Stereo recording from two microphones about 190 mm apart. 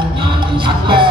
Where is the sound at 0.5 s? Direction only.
25° right (ahead or behind).